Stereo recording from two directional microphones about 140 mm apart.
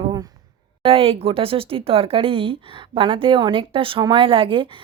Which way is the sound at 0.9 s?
40° right (ahead or behind).